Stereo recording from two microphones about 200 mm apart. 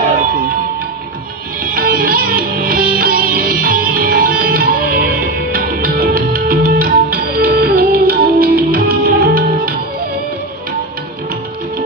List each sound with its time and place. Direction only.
1.6 s music: 45° right (ahead or behind)